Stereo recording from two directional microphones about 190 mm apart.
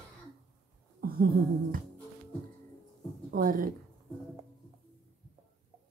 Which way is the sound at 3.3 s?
50° right (ahead or behind).